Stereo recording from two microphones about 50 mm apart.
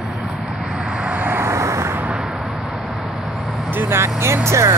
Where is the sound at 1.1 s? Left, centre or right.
Right.